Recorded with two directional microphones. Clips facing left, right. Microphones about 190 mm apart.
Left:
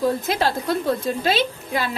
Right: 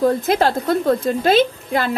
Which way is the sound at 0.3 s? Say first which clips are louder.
Right 5 dB; 50° right (ahead or behind).